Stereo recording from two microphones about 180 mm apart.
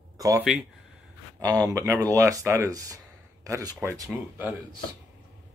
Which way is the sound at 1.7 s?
15° right (ahead or behind).